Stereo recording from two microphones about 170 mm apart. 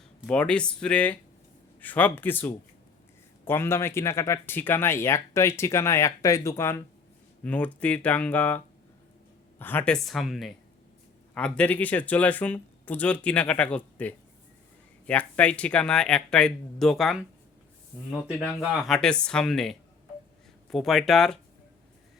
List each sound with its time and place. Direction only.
0.3 s speech: 5° left (ahead or behind)